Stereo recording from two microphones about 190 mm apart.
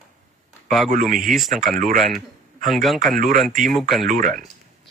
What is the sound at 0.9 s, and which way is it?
Speech, 45° right (ahead or behind).